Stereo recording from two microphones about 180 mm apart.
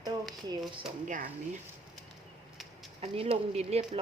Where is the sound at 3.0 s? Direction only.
30° right (ahead or behind).